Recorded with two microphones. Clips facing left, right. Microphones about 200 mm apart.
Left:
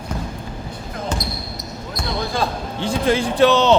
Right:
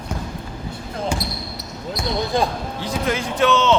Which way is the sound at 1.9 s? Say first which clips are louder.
Right 3 dB; 15° right (ahead or behind).